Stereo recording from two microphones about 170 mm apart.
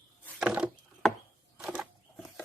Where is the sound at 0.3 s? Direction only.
5° right (ahead or behind).